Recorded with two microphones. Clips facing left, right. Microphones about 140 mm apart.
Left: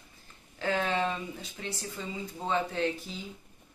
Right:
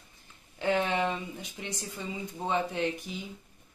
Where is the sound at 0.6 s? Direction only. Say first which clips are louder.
Right 2 dB; 15° right (ahead or behind).